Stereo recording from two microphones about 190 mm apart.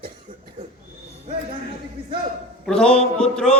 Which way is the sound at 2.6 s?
5° left (ahead or behind).